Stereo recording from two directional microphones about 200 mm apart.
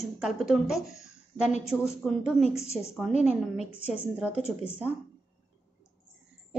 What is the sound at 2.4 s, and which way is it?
A woman's voice, 30° left (ahead or behind).